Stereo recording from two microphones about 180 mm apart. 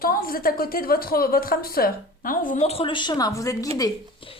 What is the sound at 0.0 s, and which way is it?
A woman's voice, 55° left (ahead or behind).